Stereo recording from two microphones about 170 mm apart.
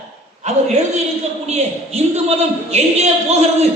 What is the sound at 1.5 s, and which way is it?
A man's voice, 40° right (ahead or behind).